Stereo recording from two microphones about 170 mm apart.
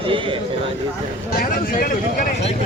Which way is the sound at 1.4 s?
60° left (ahead or behind).